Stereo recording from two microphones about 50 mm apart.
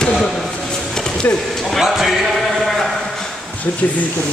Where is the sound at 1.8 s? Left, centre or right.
Centre.